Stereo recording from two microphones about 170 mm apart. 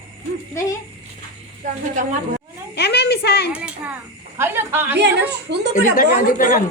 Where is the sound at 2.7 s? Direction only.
80° left.